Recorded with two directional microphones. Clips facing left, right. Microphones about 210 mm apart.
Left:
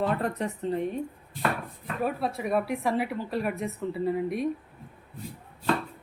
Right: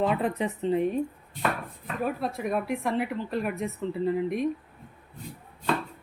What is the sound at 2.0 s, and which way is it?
A woman's voice, centre (ahead or behind).